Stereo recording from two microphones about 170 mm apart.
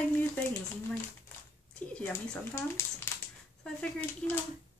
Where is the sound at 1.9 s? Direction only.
15° left (ahead or behind).